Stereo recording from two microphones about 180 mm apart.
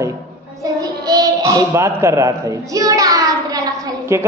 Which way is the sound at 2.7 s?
20° right (ahead or behind).